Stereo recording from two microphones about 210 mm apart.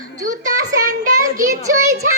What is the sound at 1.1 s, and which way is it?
Child singing, 40° right (ahead or behind).